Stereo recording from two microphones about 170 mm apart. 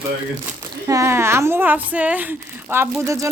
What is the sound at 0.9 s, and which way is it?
A woman's voice, 15° right (ahead or behind).